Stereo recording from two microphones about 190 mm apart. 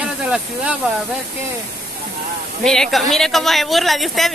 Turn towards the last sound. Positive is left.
turn(degrees=0)  # may be behind; listen again after turning